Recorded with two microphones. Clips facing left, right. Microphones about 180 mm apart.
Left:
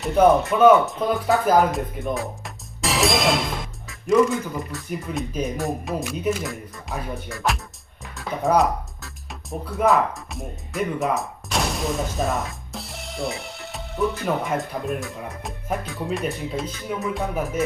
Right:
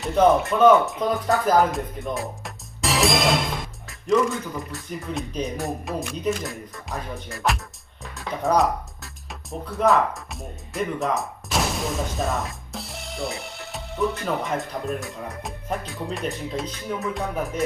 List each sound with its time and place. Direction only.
0.3 s speech: centre (ahead or behind)
4.7 s speech: centre (ahead or behind)